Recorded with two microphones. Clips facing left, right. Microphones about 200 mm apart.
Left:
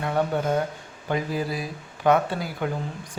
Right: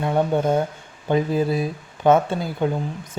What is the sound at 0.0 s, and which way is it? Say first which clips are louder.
Speech: right 4 dB; 25° right (ahead or behind).